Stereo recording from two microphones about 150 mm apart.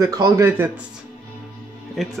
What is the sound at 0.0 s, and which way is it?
Speech, 20° right (ahead or behind).